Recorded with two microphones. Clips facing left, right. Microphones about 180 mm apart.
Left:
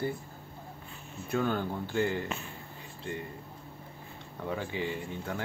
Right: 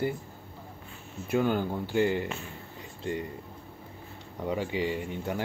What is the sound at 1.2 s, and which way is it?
Speech, 15° right (ahead or behind).